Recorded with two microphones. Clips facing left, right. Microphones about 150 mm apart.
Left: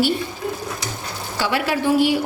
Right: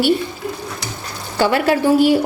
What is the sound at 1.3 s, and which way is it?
Speech, 50° right (ahead or behind).